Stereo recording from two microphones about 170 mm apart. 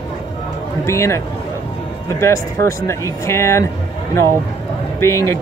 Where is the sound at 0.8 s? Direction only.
15° left (ahead or behind).